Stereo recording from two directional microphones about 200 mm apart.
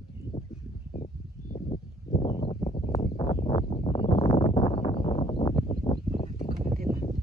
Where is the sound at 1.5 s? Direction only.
30° left (ahead or behind).